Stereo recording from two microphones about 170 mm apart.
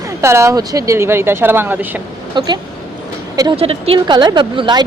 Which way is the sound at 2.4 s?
25° right (ahead or behind).